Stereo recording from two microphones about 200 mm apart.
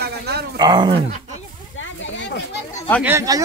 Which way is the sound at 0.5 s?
20° right (ahead or behind).